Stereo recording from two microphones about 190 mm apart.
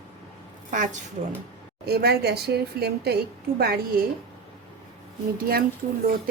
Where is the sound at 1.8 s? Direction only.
55° right (ahead or behind).